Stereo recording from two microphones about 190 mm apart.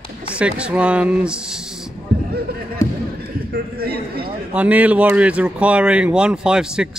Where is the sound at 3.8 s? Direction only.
55° right (ahead or behind).